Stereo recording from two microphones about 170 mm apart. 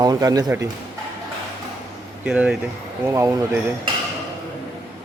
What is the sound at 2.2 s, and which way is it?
Speech, 5° right (ahead or behind).